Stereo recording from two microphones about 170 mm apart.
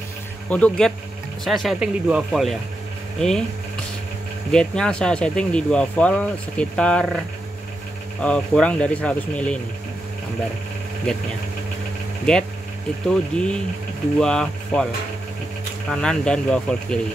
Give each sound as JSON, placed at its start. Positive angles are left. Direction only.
{"t": 0.5, "sound": "speech", "side_deg": 10}
{"t": 4.5, "sound": "speech", "side_deg": 5}
{"t": 8.2, "sound": "speech", "side_deg": 5}
{"t": 11.1, "sound": "speech", "side_deg": 5}
{"t": 12.3, "sound": "speech", "side_deg": 5}
{"t": 15.9, "sound": "speech", "side_deg": 5}